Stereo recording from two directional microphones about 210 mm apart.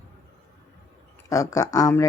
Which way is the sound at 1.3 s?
15° left (ahead or behind).